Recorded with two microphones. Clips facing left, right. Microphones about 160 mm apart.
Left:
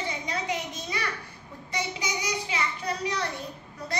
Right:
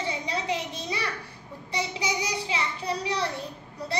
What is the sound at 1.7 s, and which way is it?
Child singing, 30° right (ahead or behind).